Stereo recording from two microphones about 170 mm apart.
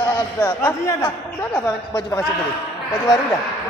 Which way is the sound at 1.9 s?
25° left (ahead or behind).